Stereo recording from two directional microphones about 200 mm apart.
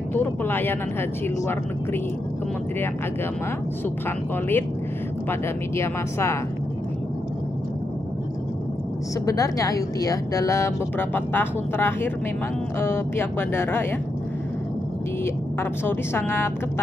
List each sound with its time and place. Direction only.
0.1 s vehicle: 10° left (ahead or behind)
5.3 s a woman's voice: 15° left (ahead or behind)
9.2 s a woman's voice: 15° left (ahead or behind)
15.8 s a woman's voice: 10° left (ahead or behind)